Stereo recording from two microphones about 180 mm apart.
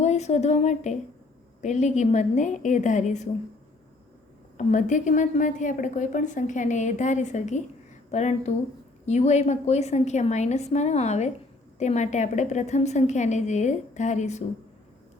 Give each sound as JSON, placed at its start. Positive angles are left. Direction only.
{"t": 0.0, "sound": "a woman's voice", "side_deg": 40}
{"t": 4.5, "sound": "a woman's voice", "side_deg": 45}